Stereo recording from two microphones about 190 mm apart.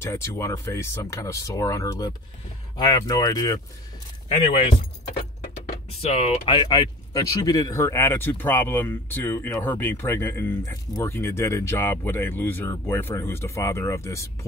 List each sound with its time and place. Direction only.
0.0 s speech: 15° left (ahead or behind)
6.1 s speech: 30° left (ahead or behind); by 14.2 s 15° left (ahead or behind)